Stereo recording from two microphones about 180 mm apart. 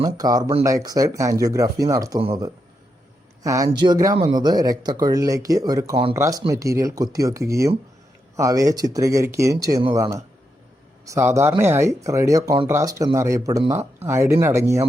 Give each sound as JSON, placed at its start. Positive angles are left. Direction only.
{"t": 0.0, "sound": "speech", "side_deg": -20}
{"t": 3.4, "sound": "speech", "side_deg": -20}